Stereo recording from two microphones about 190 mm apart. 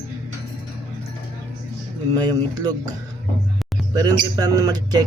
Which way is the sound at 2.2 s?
20° right (ahead or behind).